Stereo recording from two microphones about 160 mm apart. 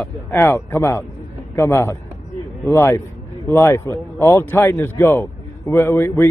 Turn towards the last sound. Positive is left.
turn(degrees=15)  # may be behind; listen again after turning